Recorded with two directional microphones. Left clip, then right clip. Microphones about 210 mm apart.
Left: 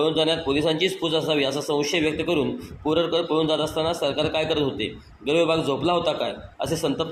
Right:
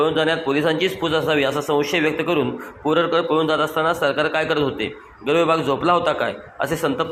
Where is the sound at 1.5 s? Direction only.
35° right (ahead or behind).